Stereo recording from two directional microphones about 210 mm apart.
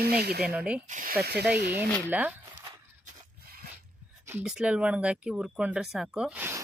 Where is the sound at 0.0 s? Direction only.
50° right (ahead or behind).